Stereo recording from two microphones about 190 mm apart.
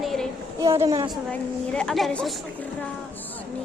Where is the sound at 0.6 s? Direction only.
15° right (ahead or behind).